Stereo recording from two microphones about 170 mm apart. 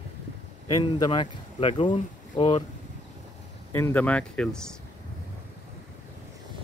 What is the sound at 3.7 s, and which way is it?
Speech, 10° left (ahead or behind).